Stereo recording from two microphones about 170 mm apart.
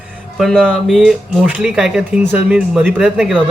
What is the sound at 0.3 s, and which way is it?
A man's voice, centre (ahead or behind).